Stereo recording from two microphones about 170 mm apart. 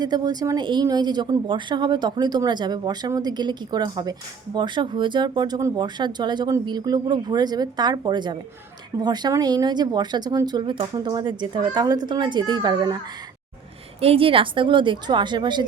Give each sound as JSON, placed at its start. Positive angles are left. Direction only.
{"t": 0.0, "sound": "speech", "side_deg": -25}
{"t": 14.0, "sound": "speech", "side_deg": -35}